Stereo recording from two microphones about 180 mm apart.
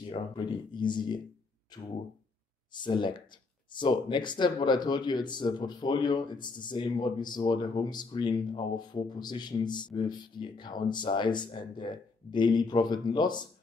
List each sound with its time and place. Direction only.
0.0 s speech: 25° left (ahead or behind)
2.7 s speech: 25° left (ahead or behind)